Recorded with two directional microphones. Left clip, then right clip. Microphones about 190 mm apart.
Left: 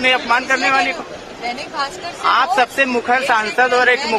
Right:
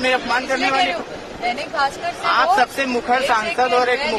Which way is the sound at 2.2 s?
35° left (ahead or behind).